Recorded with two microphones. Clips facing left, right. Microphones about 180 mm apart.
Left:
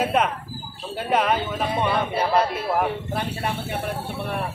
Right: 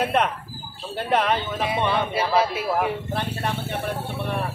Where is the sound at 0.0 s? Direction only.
5° left (ahead or behind).